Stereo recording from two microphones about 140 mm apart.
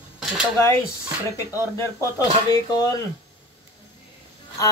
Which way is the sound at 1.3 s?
20° left (ahead or behind).